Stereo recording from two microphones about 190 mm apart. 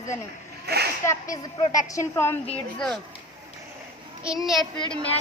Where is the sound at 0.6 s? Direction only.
55° right (ahead or behind).